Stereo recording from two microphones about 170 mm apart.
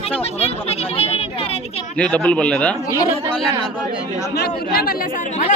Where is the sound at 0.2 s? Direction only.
35° left (ahead or behind).